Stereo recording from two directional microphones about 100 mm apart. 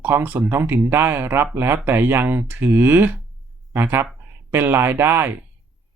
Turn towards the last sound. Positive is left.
turn(degrees=-25)  # may be behind; listen again after turning